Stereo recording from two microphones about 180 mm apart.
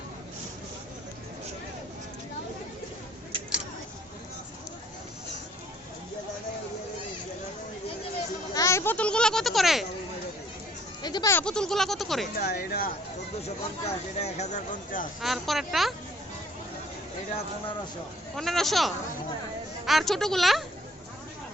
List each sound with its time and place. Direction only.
8.5 s children playing: 15° left (ahead or behind); by 9.8 s centre (ahead or behind)
11.0 s speech: 20° left (ahead or behind); by 12.3 s centre (ahead or behind)
12.4 s speech: 60° left (ahead or behind)
13.4 s speech: 35° left (ahead or behind)
15.2 s a woman's voice: centre (ahead or behind)
18.3 s a woman's voice: centre (ahead or behind)